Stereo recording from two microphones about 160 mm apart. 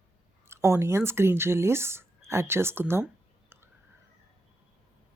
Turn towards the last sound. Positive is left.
turn(degrees=-15)  # may be behind; listen again after turning